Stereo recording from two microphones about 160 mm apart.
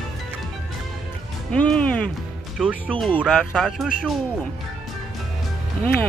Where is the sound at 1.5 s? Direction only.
5° left (ahead or behind).